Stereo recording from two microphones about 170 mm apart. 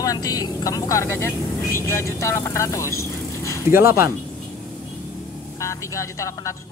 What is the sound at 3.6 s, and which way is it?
Speech, 15° right (ahead or behind).